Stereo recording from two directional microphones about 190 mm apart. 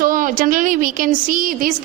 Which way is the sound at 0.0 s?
45° right (ahead or behind).